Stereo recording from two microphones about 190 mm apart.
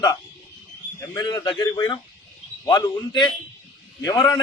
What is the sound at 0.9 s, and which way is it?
Speech, 20° left (ahead or behind).